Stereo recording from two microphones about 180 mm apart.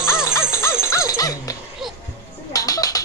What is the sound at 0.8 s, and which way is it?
Speech, 15° left (ahead or behind).